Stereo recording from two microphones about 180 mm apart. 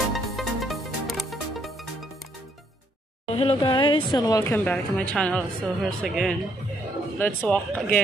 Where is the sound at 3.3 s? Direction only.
35° left (ahead or behind); by 6.4 s centre (ahead or behind).